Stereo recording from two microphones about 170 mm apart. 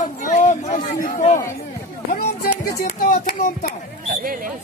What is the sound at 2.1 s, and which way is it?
Speech, 60° left (ahead or behind).